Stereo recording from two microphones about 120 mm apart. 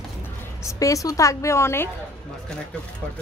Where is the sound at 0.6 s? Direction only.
25° left (ahead or behind).